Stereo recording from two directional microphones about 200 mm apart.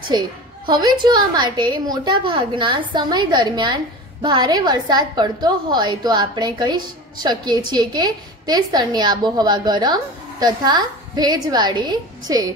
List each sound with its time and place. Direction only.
0.7 s a woman's voice: 20° right (ahead or behind)